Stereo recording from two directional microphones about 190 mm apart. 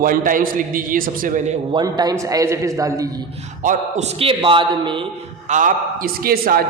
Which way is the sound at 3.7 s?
35° right (ahead or behind).